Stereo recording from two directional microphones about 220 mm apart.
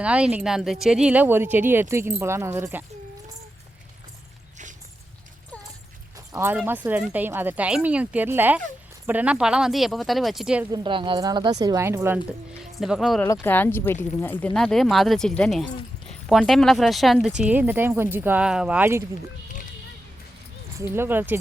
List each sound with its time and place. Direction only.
0.0 s speech: 5° right (ahead or behind)
6.3 s speech: 10° right (ahead or behind)
10.7 s a woman's voice: 20° right (ahead or behind); by 13.2 s centre (ahead or behind)
13.2 s speech: 10° left (ahead or behind); by 19.0 s 10° right (ahead or behind)
20.7 s speech: 10° right (ahead or behind)